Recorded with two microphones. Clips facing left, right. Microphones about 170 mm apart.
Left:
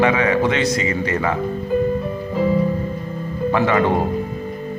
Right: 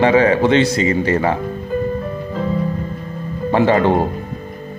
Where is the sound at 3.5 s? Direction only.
30° right (ahead or behind).